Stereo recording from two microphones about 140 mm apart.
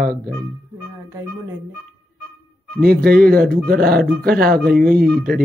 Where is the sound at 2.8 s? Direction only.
90° right.